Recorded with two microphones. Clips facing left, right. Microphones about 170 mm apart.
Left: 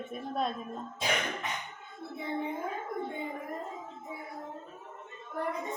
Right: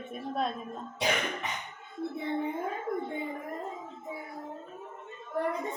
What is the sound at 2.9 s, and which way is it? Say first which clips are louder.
Gargling: right 7 dB; 60° right (ahead or behind).